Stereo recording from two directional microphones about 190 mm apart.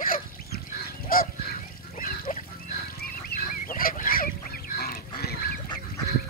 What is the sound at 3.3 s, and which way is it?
Goose, 50° left (ahead or behind).